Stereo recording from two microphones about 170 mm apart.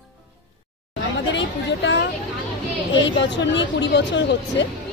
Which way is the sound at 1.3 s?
90° left.